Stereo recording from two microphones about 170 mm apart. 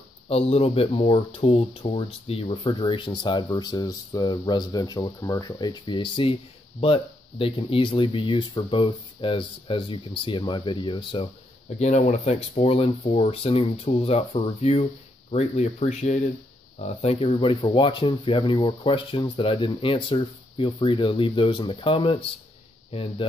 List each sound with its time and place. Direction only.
0.3 s speech: 35° left (ahead or behind)
11.8 s speech: 45° left (ahead or behind)